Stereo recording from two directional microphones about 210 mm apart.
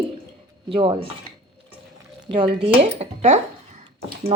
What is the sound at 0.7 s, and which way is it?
Speech, 25° right (ahead or behind).